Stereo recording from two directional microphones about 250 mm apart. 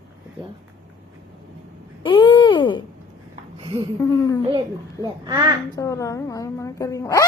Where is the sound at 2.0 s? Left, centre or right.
Centre.